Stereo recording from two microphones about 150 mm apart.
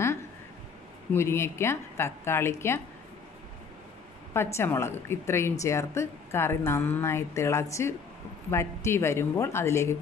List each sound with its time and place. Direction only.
1.1 s a woman's voice: 15° left (ahead or behind)
4.3 s a woman's voice: 15° left (ahead or behind)